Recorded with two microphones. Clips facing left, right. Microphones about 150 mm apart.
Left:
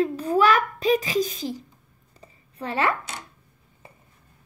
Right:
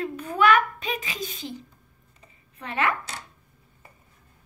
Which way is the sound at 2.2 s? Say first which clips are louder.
Left 7 dB; 35° left (ahead or behind).